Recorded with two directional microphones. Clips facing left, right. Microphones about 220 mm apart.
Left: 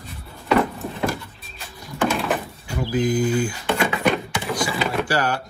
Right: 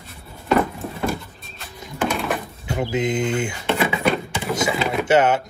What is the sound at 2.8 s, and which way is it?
Mantra, 25° right (ahead or behind).